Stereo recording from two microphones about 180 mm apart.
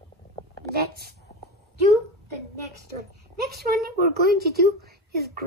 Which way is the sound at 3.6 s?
60° right (ahead or behind).